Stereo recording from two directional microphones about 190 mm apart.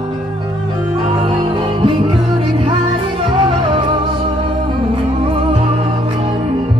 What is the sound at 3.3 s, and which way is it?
Music, 25° right (ahead or behind).